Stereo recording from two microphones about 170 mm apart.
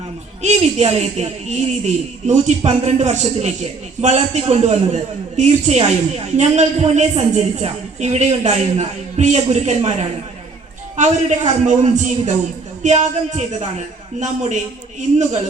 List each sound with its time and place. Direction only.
0.4 s a man's voice: 40° right (ahead or behind)
10.9 s a man's voice: 45° right (ahead or behind)